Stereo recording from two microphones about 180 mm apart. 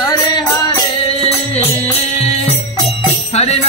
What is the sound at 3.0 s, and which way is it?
Music, 35° left (ahead or behind).